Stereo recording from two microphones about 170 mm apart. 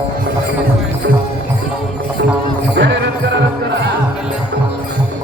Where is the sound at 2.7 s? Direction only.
80° right.